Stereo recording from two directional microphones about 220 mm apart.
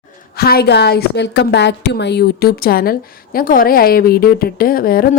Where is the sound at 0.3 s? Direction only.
45° left (ahead or behind).